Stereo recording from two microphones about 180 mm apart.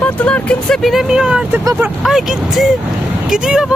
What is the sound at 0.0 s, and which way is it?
Speech, 5° left (ahead or behind).